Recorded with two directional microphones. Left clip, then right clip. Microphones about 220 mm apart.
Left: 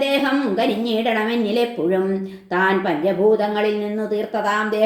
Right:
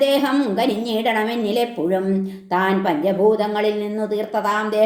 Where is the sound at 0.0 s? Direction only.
30° right (ahead or behind).